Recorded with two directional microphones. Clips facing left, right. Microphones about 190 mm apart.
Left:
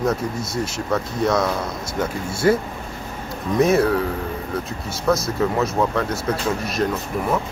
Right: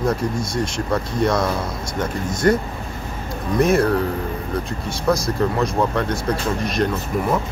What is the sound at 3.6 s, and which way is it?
Speech, centre (ahead or behind).